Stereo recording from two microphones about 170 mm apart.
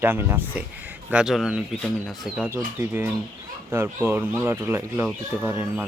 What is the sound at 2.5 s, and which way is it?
Speech, 15° right (ahead or behind).